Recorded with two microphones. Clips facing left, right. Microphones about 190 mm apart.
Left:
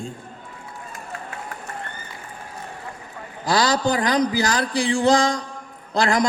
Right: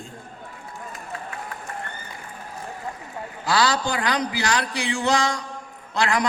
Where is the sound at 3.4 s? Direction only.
35° left (ahead or behind).